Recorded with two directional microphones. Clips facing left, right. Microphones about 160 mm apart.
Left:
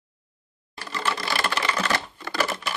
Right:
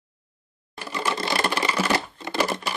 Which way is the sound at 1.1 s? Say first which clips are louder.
Right 5 dB; 25° right (ahead or behind).